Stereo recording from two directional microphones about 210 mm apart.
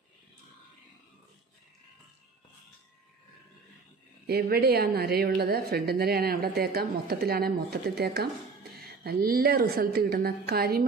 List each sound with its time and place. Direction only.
4.3 s a woman's voice: 50° right (ahead or behind)